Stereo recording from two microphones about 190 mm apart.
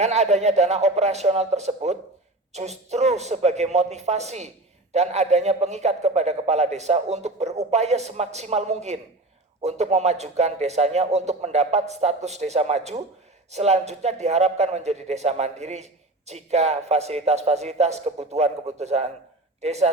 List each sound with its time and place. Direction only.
0.0 s speech: 35° right (ahead or behind)